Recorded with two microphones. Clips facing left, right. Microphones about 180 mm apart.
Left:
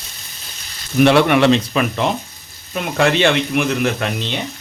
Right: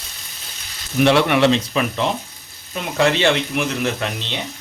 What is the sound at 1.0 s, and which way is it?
Speech, 55° left (ahead or behind).